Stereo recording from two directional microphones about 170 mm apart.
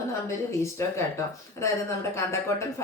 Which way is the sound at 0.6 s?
15° left (ahead or behind).